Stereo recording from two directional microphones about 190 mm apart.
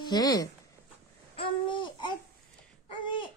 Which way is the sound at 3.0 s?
25° left (ahead or behind).